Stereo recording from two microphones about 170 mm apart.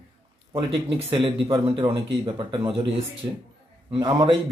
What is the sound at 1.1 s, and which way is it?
A man's voice, 30° right (ahead or behind).